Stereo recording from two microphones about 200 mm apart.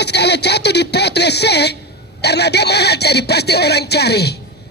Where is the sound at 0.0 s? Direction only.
55° left (ahead or behind).